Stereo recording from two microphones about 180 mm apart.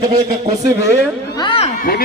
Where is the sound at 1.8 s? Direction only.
55° left (ahead or behind).